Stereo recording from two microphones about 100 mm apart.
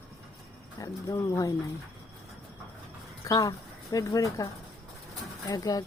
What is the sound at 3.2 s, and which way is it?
Speech, 40° left (ahead or behind).